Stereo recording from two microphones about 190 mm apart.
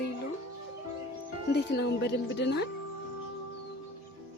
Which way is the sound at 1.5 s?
60° left (ahead or behind).